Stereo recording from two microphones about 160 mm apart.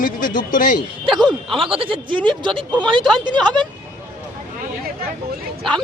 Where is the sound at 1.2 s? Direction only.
30° right (ahead or behind).